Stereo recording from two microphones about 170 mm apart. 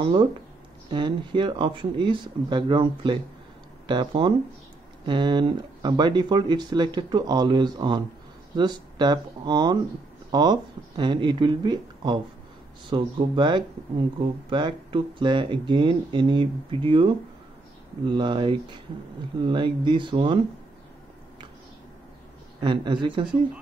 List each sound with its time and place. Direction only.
0.0 s speech: 30° right (ahead or behind)
22.6 s speech: 25° right (ahead or behind)